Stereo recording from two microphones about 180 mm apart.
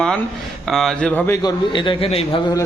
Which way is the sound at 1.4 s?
25° left (ahead or behind).